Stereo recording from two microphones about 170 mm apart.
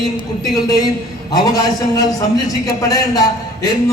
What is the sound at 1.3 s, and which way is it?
A man's voice, 20° left (ahead or behind).